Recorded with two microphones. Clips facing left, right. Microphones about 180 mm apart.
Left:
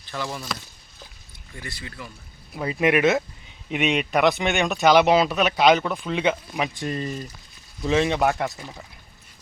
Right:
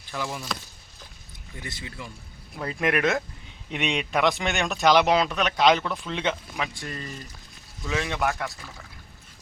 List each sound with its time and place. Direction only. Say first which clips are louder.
0.1 s a man's voice: left 1 dB; 5° right (ahead or behind)
1.5 s speech: left 1 dB; 20° right (ahead or behind)
2.6 s a man's voice: left 5 dB; 5° left (ahead or behind)
6.6 s speech: left 6 dB; 20° left (ahead or behind)